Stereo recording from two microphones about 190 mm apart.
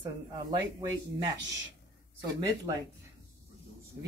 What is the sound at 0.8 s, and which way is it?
Speech, 20° right (ahead or behind).